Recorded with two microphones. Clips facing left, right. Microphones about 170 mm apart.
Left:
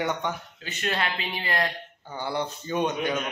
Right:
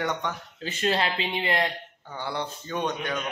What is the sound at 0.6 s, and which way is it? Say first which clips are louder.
Speech: right 4 dB; 30° right (ahead or behind).